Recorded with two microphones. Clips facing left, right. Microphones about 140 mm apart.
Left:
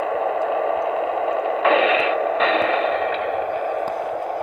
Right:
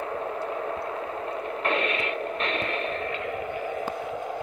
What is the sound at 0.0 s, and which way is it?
Radio, 90° left.